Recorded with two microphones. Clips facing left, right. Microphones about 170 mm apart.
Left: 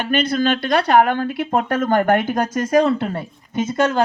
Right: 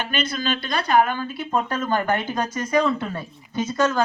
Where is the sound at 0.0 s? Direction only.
60° left (ahead or behind).